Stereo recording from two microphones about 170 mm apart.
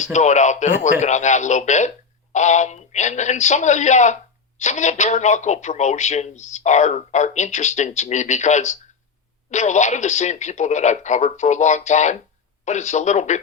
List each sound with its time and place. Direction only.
0.0 s speech: 45° left (ahead or behind)